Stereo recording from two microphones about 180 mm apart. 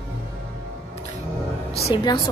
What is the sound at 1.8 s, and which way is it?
Speech, 25° left (ahead or behind).